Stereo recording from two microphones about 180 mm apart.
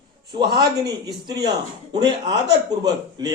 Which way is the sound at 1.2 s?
25° right (ahead or behind).